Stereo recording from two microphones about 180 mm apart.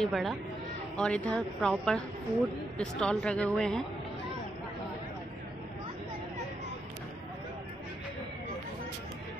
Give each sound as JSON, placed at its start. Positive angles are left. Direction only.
{"t": 0.0, "sound": "a woman's voice", "side_deg": 0}